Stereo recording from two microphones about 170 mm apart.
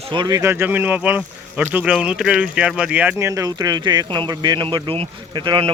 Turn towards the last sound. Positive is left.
turn(degrees=-30)  # may be behind; listen again after turning